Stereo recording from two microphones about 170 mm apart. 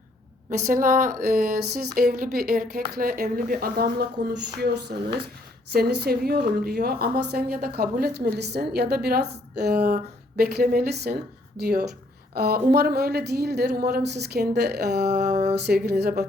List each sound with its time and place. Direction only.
0.7 s a woman's voice: 50° right (ahead or behind); by 16.2 s 70° right (ahead or behind)